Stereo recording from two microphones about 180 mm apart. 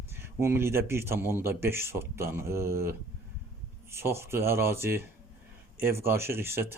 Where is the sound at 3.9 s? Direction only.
15° right (ahead or behind).